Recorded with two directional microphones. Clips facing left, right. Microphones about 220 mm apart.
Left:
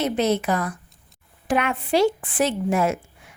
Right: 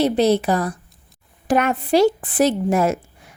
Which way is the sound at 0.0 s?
35° right (ahead or behind).